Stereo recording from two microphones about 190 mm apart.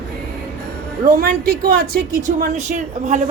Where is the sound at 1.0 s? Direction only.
50° right (ahead or behind).